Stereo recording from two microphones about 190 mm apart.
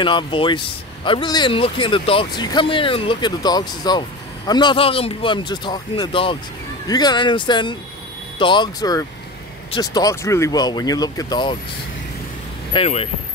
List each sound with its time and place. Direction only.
0.0 s speech: 25° left (ahead or behind)
12.7 s speech: 30° left (ahead or behind)